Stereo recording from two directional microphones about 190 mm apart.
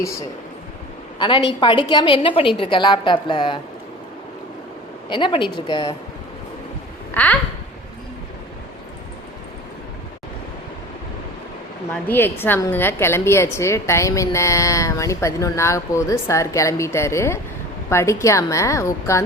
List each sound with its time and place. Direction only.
1.2 s a woman's voice: 25° left (ahead or behind)
5.0 s a woman's voice: 25° left (ahead or behind)
7.1 s speech: 10° left (ahead or behind)
12.0 s a woman's voice: 10° left (ahead or behind)